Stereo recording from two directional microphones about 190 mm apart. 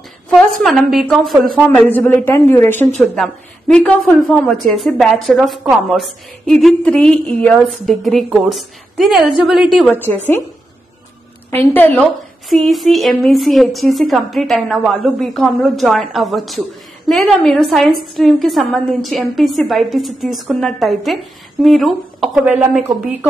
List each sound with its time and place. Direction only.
0.3 s a woman's voice: centre (ahead or behind)
11.5 s a woman's voice: 10° left (ahead or behind)